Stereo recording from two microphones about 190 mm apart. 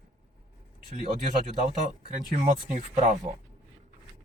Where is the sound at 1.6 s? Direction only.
45° right (ahead or behind).